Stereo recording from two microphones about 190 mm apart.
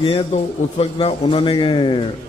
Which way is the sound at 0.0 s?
30° left (ahead or behind).